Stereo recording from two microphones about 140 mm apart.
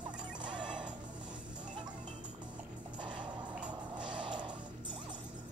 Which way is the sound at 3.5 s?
10° right (ahead or behind).